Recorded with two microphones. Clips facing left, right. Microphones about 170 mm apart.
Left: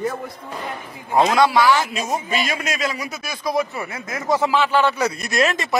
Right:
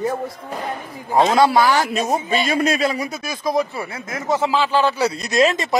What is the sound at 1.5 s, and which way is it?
A man's voice, 40° right (ahead or behind).